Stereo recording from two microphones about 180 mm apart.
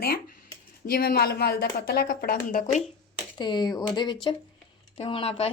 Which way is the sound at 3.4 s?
25° left (ahead or behind).